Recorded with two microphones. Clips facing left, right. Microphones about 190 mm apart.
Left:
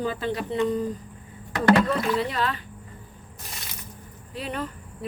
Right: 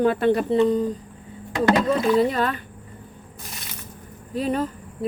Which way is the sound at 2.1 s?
45° right (ahead or behind).